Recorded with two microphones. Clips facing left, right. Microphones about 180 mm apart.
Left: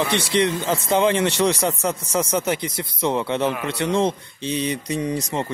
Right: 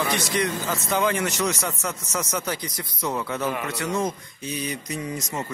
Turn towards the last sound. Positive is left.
turn(degrees=30)  # may be behind; listen again after turning